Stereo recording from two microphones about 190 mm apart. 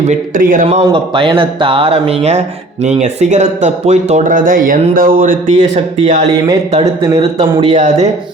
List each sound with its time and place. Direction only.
0.0 s speech: 40° right (ahead or behind)
0.9 s speech: 25° right (ahead or behind)
7.0 s speech: 20° right (ahead or behind)
7.7 s speech: 40° right (ahead or behind)